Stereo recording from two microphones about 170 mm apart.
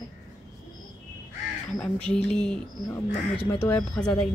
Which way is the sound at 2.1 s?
5° left (ahead or behind).